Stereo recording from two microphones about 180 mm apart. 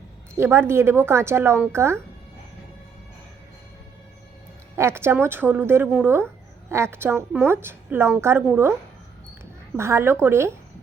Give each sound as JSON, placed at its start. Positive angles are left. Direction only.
{"t": 0.3, "sound": "a woman's voice", "side_deg": -15}
{"t": 4.8, "sound": "a woman's voice", "side_deg": -15}
{"t": 9.7, "sound": "a woman's voice", "side_deg": -15}